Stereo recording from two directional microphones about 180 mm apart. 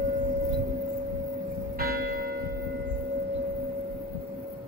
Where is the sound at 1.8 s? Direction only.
55° right (ahead or behind).